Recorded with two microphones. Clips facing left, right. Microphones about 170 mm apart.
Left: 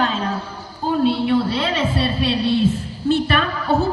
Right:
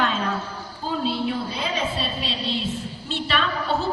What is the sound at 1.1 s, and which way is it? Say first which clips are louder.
A woman's voice: left 8 dB; 70° left (ahead or behind).